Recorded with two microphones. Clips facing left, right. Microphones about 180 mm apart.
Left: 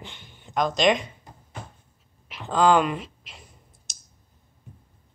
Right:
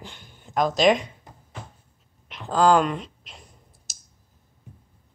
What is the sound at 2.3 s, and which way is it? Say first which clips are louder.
Clicking: right 1 dB; centre (ahead or behind).